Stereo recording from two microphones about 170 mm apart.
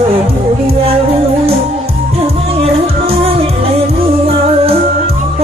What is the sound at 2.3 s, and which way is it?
Music, 35° right (ahead or behind).